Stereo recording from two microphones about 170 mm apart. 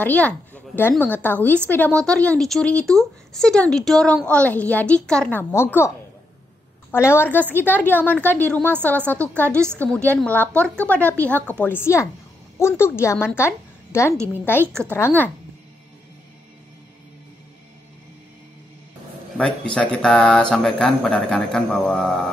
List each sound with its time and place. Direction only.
0.0 s a woman's voice: 10° left (ahead or behind)
6.9 s a woman's voice: 15° left (ahead or behind)
14.1 s a woman's voice: 15° right (ahead or behind)
14.4 s speech: 10° left (ahead or behind)
19.3 s speech: 5° left (ahead or behind)